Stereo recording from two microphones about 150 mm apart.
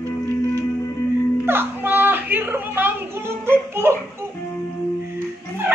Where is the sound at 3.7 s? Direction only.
15° right (ahead or behind).